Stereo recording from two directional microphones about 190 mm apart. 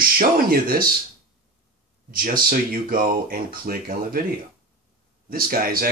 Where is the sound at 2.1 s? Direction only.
50° right (ahead or behind).